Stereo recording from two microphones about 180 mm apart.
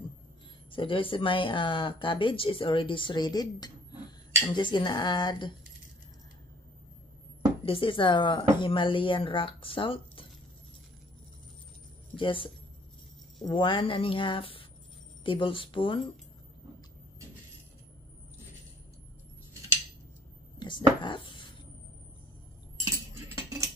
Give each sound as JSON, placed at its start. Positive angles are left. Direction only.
{"t": 0.7, "sound": "speech", "side_deg": 30}
{"t": 7.6, "sound": "speech", "side_deg": 30}
{"t": 12.2, "sound": "speech", "side_deg": 30}
{"t": 13.5, "sound": "speech", "side_deg": 25}
{"t": 20.5, "sound": "chopping", "side_deg": 25}
{"t": 21.0, "sound": "speech", "side_deg": 25}
{"t": 22.9, "sound": "a sound", "side_deg": -20}